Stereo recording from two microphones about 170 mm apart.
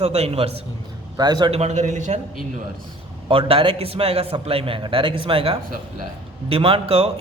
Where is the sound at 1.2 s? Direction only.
25° right (ahead or behind).